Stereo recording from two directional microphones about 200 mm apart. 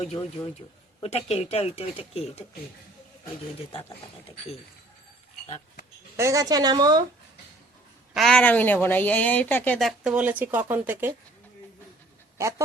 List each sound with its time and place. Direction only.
0.0 s speech: 30° left (ahead or behind)
5.5 s a sound: 35° left (ahead or behind)
6.1 s a woman's voice: 15° right (ahead or behind)
8.1 s a woman's voice: centre (ahead or behind)
12.4 s a woman's voice: 15° right (ahead or behind)